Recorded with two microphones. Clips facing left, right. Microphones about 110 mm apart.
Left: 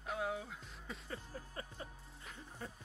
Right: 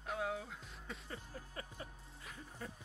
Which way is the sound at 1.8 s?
30° left (ahead or behind).